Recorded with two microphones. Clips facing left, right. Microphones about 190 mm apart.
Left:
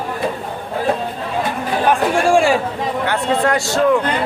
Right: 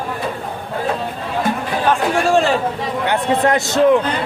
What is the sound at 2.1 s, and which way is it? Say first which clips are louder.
Speech: left 2 dB; 10° left (ahead or behind).